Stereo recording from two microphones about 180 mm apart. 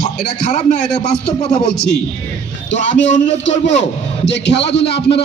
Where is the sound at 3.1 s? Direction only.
40° left (ahead or behind).